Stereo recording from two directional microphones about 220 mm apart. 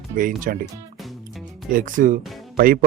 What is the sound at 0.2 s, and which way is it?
Speech, 40° right (ahead or behind).